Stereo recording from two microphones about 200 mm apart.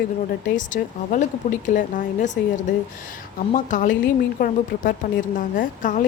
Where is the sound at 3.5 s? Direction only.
40° left (ahead or behind).